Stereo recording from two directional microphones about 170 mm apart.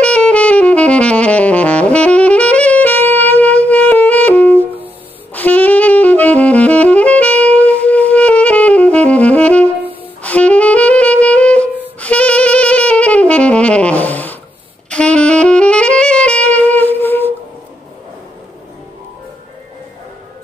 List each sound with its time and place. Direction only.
0.0 s saxophone: 5° left (ahead or behind)